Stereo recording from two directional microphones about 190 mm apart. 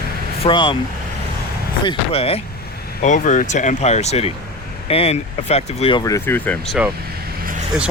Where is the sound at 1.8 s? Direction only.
30° left (ahead or behind).